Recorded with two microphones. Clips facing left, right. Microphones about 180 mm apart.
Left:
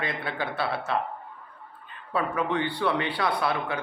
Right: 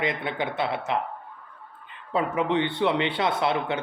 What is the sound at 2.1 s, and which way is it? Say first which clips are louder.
Speech: right 3 dB; 20° right (ahead or behind).